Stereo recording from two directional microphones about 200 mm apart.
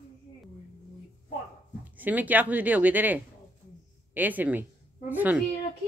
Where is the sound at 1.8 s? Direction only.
10° right (ahead or behind).